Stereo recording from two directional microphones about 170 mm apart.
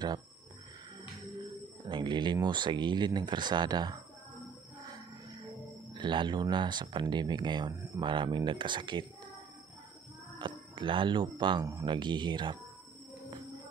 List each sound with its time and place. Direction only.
1.4 s speech: 25° right (ahead or behind)
5.9 s speech: 30° right (ahead or behind)
10.4 s speech: 30° right (ahead or behind)